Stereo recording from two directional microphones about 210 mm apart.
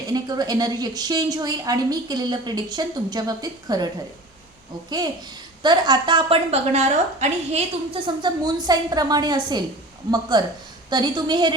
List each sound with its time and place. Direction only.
0.1 s a woman's voice: 20° right (ahead or behind)
4.9 s a woman's voice: 20° right (ahead or behind)